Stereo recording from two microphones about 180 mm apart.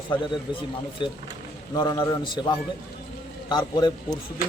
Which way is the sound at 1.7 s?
20° left (ahead or behind).